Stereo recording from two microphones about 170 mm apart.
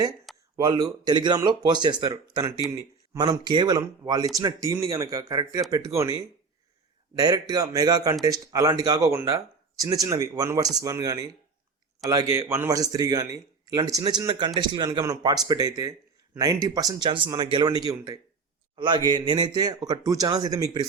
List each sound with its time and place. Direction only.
0.5 s speech: 25° right (ahead or behind)
7.2 s speech: 20° right (ahead or behind)